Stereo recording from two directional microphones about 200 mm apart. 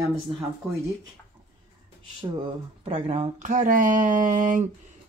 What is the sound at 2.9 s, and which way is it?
Speech, 30° right (ahead or behind).